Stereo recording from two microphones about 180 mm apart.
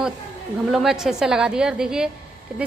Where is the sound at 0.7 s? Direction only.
Centre (ahead or behind).